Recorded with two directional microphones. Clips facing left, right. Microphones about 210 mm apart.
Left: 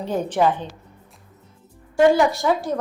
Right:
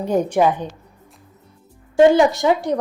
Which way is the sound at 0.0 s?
15° right (ahead or behind).